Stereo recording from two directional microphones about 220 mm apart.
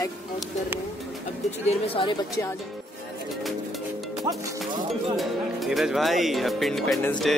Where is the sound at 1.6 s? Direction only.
25° left (ahead or behind).